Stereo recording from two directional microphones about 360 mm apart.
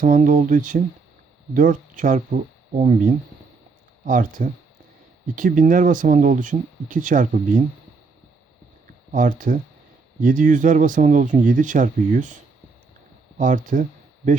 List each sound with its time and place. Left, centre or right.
0.0 s speech: right
9.1 s speech: right
13.4 s speech: right